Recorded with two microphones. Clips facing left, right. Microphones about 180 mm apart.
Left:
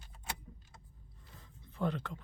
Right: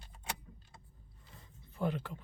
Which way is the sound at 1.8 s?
5° right (ahead or behind).